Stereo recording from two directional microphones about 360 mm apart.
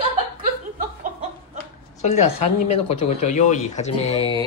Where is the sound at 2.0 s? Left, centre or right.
Centre.